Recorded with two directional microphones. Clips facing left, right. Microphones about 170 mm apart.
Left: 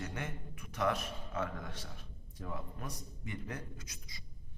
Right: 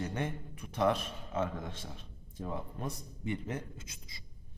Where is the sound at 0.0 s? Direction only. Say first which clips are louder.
Right 6 dB; 25° right (ahead or behind).